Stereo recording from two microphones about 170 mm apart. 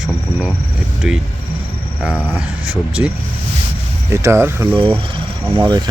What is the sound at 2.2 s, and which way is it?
Speech, 15° left (ahead or behind).